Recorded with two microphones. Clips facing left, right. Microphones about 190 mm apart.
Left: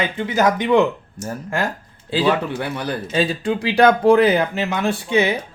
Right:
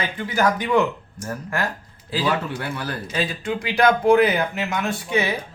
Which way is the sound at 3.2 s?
30° left (ahead or behind).